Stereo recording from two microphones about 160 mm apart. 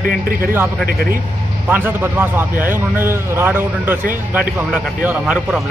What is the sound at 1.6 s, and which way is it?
A man's voice, 10° right (ahead or behind).